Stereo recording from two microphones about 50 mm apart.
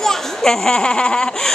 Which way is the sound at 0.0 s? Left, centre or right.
Centre.